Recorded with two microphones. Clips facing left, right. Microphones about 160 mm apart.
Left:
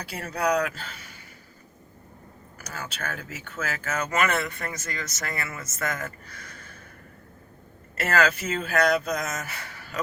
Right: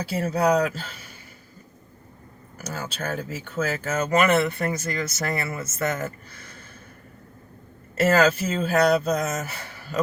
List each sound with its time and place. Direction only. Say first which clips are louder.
0.0 s speech: right 5 dB; 30° right (ahead or behind)
2.6 s speech: right 5 dB; 30° right (ahead or behind)
8.1 s speech: right 2 dB; 30° right (ahead or behind)